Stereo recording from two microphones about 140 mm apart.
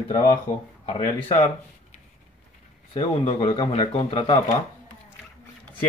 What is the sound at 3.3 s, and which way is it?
A man's voice, 45° left (ahead or behind).